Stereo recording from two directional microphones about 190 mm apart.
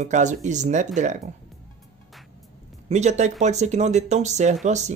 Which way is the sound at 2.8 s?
35° right (ahead or behind).